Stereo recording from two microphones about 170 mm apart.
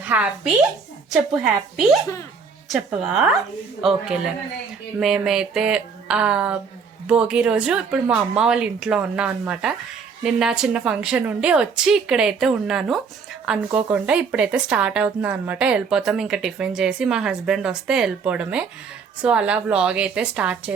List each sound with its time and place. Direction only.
0.0 s a woman's voice: 10° right (ahead or behind)